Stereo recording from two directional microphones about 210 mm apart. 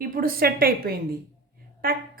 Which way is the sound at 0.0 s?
45° right (ahead or behind).